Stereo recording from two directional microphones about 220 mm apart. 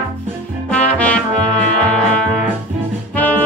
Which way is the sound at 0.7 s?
5° left (ahead or behind).